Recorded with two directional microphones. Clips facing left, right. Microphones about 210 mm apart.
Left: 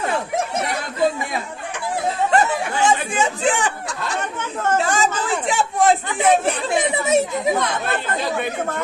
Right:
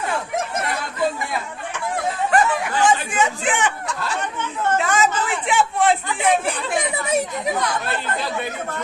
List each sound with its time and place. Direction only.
2.3 s chatter: 25° left (ahead or behind)
4.2 s chatter: 40° left (ahead or behind)
6.4 s speech: 25° left (ahead or behind)